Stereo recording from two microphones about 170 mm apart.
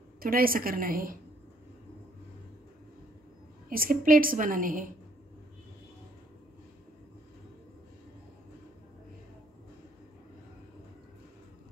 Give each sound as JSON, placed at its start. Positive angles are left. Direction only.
{"t": 0.2, "sound": "a woman's voice", "side_deg": -60}
{"t": 3.6, "sound": "a woman's voice", "side_deg": -55}